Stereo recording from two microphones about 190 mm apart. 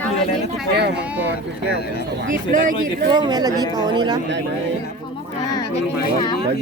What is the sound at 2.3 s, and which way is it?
Speech, 45° right (ahead or behind).